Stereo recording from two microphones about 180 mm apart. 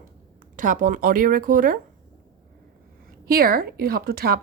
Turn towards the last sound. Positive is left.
turn(degrees=-60)  # may be behind; listen again after turning